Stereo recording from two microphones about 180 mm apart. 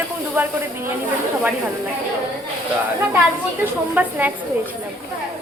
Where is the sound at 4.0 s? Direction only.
10° right (ahead or behind).